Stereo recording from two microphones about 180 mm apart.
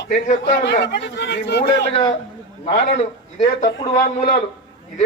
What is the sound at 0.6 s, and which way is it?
A man's voice, 70° left (ahead or behind).